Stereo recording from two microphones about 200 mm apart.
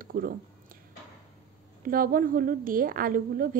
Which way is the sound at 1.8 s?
45° right (ahead or behind).